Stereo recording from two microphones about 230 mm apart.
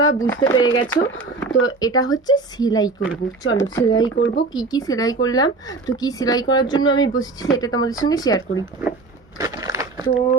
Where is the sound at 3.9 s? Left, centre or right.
Left.